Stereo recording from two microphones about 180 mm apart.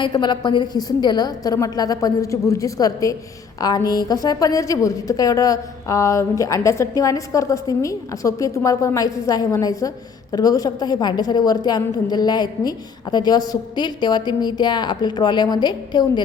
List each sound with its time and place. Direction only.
0.0 s a woman's voice: 25° left (ahead or behind)